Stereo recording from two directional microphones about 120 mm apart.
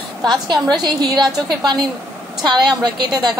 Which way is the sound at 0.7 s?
35° right (ahead or behind).